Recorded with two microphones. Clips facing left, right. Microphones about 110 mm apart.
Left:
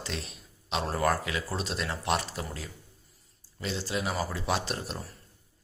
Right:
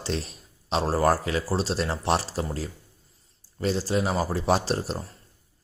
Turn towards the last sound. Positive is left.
turn(degrees=-35)  # may be behind; listen again after turning